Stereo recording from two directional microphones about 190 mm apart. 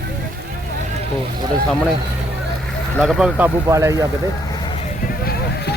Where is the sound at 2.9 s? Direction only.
Centre (ahead or behind); by 4.0 s 15° right (ahead or behind).